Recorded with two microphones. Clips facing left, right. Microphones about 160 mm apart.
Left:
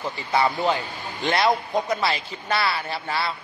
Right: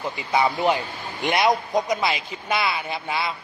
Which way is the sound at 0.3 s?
15° right (ahead or behind).